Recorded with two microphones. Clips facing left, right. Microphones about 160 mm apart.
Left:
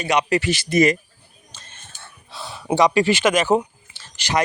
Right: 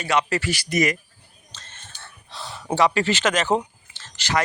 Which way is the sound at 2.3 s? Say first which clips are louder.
Left 4 dB; 10° left (ahead or behind).